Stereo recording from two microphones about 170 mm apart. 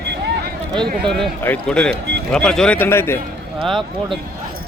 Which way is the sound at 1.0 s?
Centre (ahead or behind).